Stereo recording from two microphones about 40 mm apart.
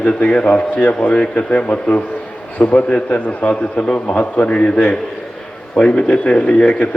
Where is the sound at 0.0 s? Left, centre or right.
Left.